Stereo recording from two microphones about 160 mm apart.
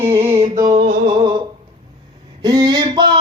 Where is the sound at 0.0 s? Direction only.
20° right (ahead or behind).